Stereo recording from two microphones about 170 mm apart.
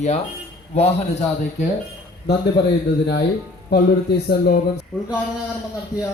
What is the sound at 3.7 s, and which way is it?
Speech, 70° left (ahead or behind).